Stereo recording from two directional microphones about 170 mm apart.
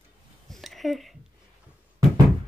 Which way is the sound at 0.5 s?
Centre (ahead or behind).